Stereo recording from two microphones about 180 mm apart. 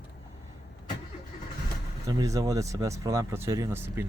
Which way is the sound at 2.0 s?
20° right (ahead or behind).